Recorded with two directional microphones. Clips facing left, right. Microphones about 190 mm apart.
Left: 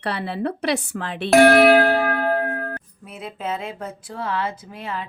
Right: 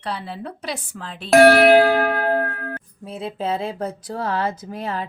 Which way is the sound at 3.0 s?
30° right (ahead or behind).